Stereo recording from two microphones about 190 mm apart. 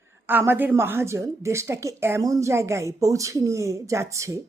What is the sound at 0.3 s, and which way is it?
A woman's voice, 10° right (ahead or behind).